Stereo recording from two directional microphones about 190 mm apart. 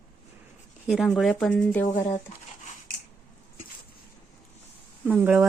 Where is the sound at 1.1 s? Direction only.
Centre (ahead or behind).